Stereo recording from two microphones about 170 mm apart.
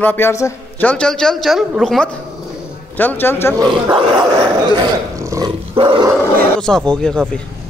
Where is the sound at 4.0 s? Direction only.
25° right (ahead or behind).